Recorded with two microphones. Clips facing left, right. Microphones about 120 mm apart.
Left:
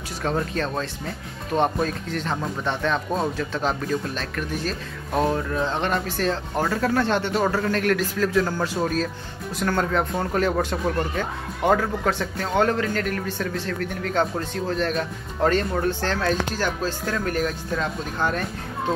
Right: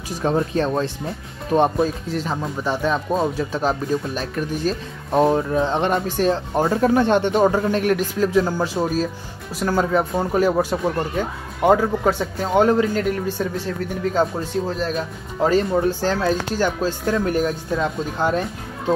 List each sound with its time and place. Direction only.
0.2 s speech: 20° right (ahead or behind)